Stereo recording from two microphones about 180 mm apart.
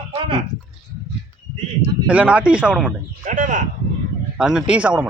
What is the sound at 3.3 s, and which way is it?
Speech, 45° right (ahead or behind).